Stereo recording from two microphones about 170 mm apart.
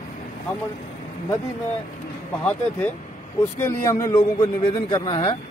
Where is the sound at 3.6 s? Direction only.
15° left (ahead or behind).